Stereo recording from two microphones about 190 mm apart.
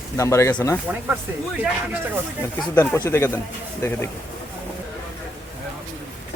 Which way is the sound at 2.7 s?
15° left (ahead or behind).